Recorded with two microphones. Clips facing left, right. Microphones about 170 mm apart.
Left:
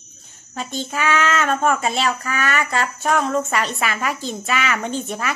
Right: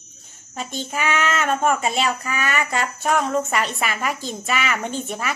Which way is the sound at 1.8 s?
35° left (ahead or behind).